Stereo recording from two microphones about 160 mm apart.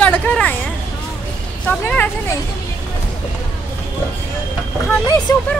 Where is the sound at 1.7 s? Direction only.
15° left (ahead or behind).